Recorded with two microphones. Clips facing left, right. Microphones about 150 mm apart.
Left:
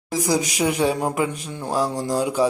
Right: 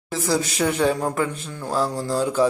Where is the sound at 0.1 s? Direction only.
15° left (ahead or behind).